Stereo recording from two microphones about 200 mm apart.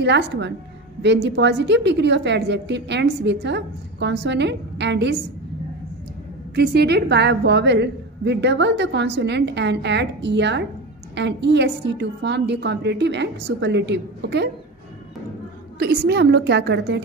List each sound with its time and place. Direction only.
0.0 s a woman's voice: 60° right (ahead or behind)
6.5 s a woman's voice: 55° right (ahead or behind)
15.8 s a woman's voice: 55° right (ahead or behind)